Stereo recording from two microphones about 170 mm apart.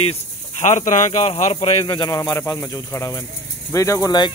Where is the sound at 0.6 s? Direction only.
45° left (ahead or behind).